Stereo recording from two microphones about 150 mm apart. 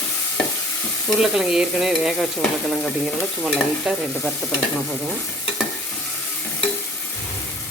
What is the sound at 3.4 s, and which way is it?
Stir, 5° right (ahead or behind).